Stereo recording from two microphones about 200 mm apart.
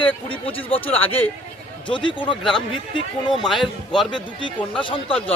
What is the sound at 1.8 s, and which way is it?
Speech, 25° left (ahead or behind).